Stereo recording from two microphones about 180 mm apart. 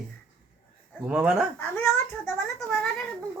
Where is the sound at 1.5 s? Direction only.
10° left (ahead or behind).